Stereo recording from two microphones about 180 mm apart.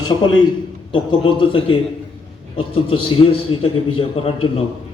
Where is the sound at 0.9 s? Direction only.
30° left (ahead or behind).